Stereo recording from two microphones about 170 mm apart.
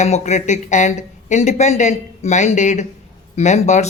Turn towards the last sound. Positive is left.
turn(degrees=40)  # may be behind; listen again after turning